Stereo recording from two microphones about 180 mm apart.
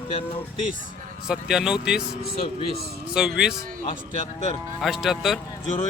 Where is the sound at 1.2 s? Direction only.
Centre (ahead or behind).